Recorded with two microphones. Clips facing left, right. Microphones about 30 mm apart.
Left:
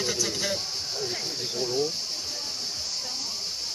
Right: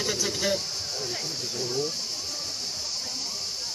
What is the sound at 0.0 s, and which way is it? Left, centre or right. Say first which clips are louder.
Speech: right 1 dB; centre.